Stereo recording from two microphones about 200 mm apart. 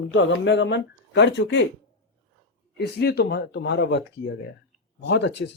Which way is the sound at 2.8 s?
55° left (ahead or behind).